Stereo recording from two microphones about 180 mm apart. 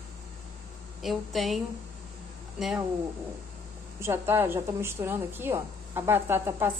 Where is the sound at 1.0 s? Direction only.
Centre (ahead or behind).